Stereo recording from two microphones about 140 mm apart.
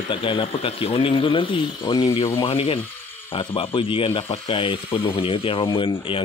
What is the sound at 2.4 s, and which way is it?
Speech, 40° left (ahead or behind).